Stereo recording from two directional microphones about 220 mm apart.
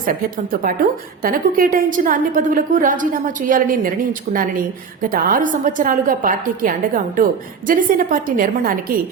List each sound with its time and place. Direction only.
1.2 s a woman's voice: 40° right (ahead or behind)